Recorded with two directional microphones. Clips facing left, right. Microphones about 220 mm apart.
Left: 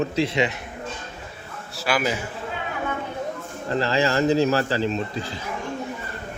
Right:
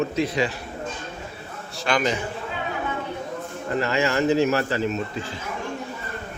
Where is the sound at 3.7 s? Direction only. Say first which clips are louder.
Left 1 dB; 35° left (ahead or behind).